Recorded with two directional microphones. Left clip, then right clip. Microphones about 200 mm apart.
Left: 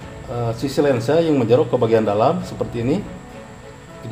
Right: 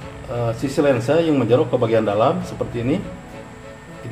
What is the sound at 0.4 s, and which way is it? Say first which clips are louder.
A man's voice: even; 20° left (ahead or behind).